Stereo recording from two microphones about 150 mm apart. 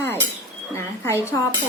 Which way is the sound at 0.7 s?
20° left (ahead or behind).